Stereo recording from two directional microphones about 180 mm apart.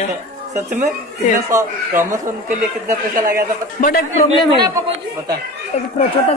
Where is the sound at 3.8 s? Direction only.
45° left (ahead or behind).